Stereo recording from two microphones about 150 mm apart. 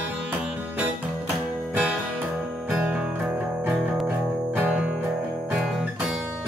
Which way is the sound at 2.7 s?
5° right (ahead or behind).